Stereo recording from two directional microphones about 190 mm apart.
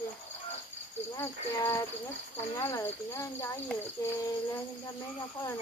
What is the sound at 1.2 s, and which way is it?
Speech, 15° left (ahead or behind).